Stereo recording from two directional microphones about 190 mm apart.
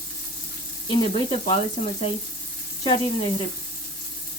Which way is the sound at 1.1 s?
25° left (ahead or behind).